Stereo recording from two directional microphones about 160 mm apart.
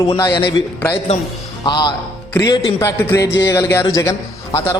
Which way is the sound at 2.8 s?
15° left (ahead or behind).